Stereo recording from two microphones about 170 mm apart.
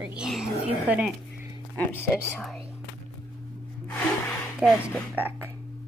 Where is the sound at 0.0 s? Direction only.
5° right (ahead or behind).